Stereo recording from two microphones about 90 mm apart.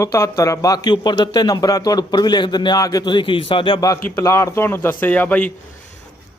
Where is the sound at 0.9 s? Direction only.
60° left (ahead or behind); by 3.1 s 40° left (ahead or behind).